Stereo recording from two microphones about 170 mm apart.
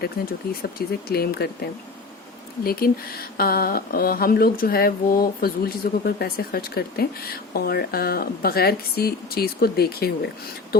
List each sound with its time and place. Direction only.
0.4 s speech: 65° left (ahead or behind)
2.6 s speech: 60° left (ahead or behind)